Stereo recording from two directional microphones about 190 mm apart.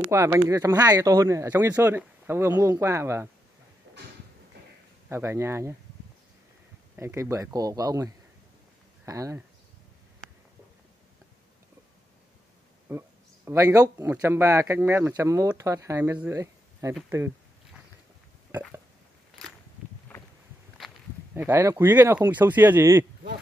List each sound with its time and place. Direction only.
0.1 s speech: 15° right (ahead or behind)
5.1 s speech: 15° right (ahead or behind)
7.0 s speech: 15° right (ahead or behind)
12.9 s speech: 10° right (ahead or behind)
21.4 s speech: 10° right (ahead or behind)